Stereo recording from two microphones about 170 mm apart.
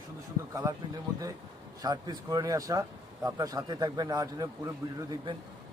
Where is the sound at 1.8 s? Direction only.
25° right (ahead or behind).